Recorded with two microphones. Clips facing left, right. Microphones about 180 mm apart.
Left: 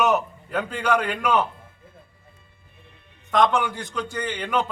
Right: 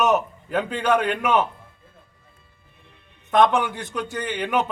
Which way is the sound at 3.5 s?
20° right (ahead or behind).